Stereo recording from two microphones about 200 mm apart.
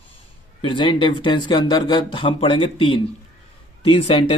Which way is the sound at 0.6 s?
25° left (ahead or behind).